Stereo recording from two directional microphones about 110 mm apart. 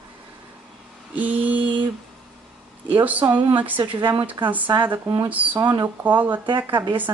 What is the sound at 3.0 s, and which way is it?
A woman's voice, 15° right (ahead or behind).